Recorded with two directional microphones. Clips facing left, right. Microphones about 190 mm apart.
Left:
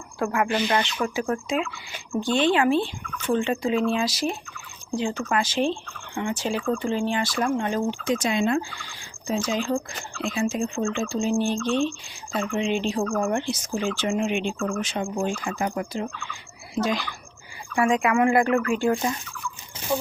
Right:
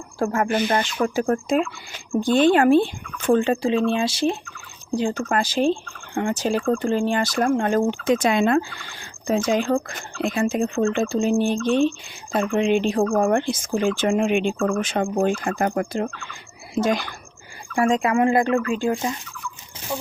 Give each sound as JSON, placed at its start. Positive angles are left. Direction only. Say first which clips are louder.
{"t": 0.2, "sound": "speech", "louder": "right 3 dB", "side_deg": -35}
{"t": 5.0, "sound": "speech", "louder": "right 2 dB", "side_deg": -50}
{"t": 5.4, "sound": "speech", "louder": "right 5 dB", "side_deg": -35}
{"t": 17.7, "sound": "speech", "louder": "right 2 dB", "side_deg": -35}